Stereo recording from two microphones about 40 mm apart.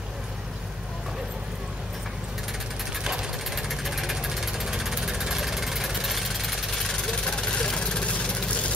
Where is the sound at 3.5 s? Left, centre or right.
Centre; by 8.3 s left.